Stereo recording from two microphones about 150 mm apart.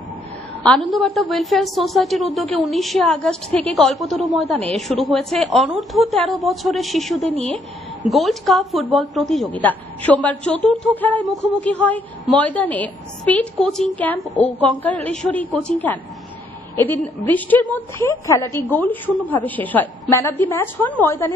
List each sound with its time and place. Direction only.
0.7 s a woman's voice: centre (ahead or behind)